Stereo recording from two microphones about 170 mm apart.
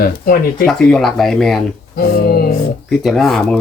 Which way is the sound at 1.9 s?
65° left (ahead or behind).